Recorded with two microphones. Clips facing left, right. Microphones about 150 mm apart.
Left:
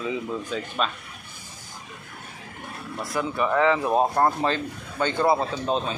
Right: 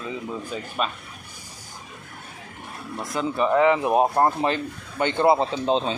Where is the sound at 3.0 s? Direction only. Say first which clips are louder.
Right 2 dB; 20° right (ahead or behind).